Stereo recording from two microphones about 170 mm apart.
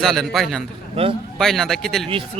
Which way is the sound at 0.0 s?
Centre (ahead or behind).